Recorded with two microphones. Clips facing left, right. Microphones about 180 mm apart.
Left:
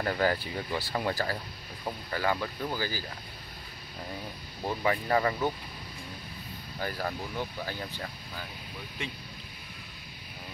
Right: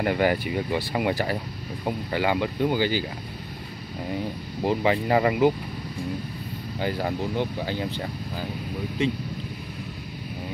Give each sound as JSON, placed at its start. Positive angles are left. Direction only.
{"t": 0.0, "sound": "speech", "side_deg": -15}
{"t": 4.6, "sound": "speech", "side_deg": -25}
{"t": 6.8, "sound": "speech", "side_deg": -20}